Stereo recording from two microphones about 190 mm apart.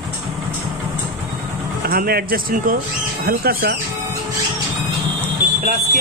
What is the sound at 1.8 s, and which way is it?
Speech, 50° right (ahead or behind).